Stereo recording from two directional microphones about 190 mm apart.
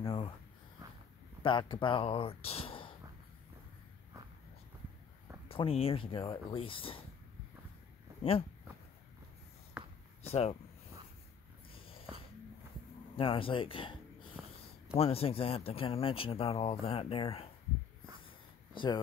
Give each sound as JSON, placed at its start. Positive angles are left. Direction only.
{"t": 0.0, "sound": "a sound", "side_deg": 30}
{"t": 1.4, "sound": "speech", "side_deg": 25}
{"t": 5.5, "sound": "speech", "side_deg": 30}
{"t": 8.2, "sound": "speech", "side_deg": 30}
{"t": 9.8, "sound": "a sound", "side_deg": -5}
{"t": 10.2, "sound": "speech", "side_deg": 30}
{"t": 11.7, "sound": "a sound", "side_deg": 30}
{"t": 13.1, "sound": "speech", "side_deg": 30}
{"t": 15.0, "sound": "speech", "side_deg": 30}